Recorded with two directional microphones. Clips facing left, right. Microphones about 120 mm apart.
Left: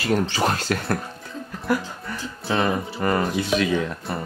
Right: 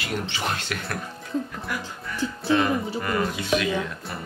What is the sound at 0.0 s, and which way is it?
Speech, 40° left (ahead or behind).